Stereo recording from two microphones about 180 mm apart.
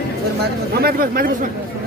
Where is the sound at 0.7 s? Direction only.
55° right (ahead or behind).